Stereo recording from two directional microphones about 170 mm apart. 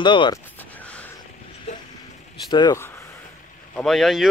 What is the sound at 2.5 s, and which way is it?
Speech, 25° left (ahead or behind).